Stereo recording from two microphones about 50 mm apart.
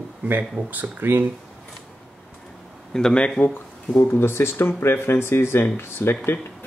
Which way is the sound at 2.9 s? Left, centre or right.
Centre.